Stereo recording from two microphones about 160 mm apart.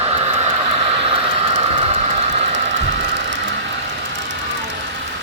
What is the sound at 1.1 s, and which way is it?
Train, 40° right (ahead or behind).